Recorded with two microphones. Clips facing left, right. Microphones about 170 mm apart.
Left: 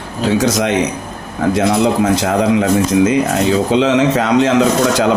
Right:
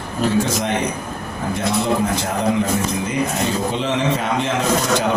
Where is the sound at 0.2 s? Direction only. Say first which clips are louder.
Left 4 dB; 85° left.